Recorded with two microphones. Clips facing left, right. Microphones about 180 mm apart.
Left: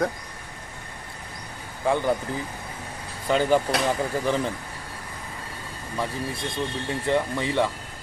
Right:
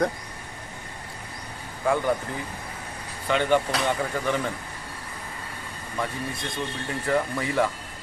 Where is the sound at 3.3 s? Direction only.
40° left (ahead or behind).